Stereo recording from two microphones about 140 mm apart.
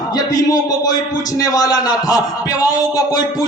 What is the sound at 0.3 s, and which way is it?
A man's voice, 25° left (ahead or behind).